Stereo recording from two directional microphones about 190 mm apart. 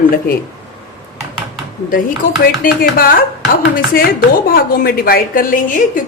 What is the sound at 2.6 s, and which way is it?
Speech, 50° left (ahead or behind).